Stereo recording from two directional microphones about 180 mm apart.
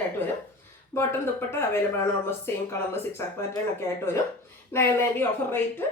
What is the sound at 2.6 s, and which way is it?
Speech, 15° left (ahead or behind).